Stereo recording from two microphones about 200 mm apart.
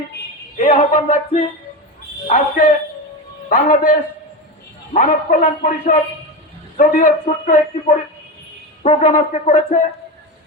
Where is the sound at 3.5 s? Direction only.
45° left (ahead or behind).